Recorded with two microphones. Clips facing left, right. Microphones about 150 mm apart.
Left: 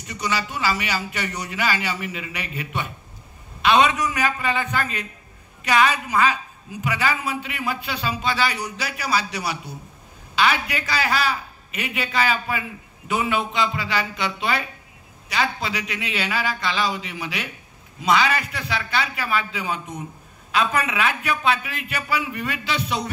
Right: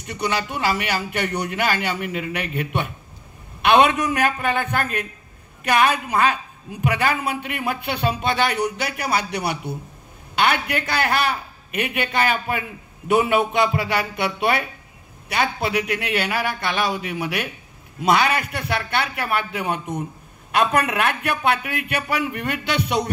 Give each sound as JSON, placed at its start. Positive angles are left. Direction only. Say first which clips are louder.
{"t": 0.0, "sound": "a woman's voice", "louder": "right 2 dB", "side_deg": -60}